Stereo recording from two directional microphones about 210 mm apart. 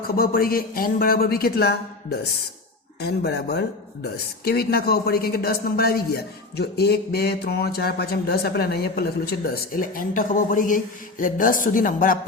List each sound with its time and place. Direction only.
0.2 s a man's voice: 45° left (ahead or behind)